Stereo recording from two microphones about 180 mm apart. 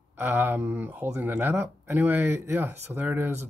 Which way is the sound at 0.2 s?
10° right (ahead or behind).